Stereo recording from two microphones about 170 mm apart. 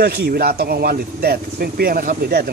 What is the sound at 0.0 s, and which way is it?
A man's voice, 70° right (ahead or behind).